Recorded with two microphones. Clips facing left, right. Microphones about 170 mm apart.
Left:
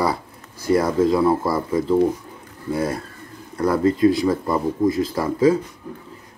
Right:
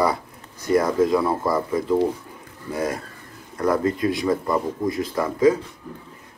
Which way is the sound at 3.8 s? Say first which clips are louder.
Left 5 dB; 30° left (ahead or behind).